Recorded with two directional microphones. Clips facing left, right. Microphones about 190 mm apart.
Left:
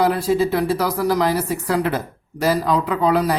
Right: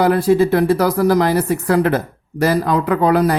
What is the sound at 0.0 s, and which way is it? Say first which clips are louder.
Speech: right 4 dB; 55° right (ahead or behind).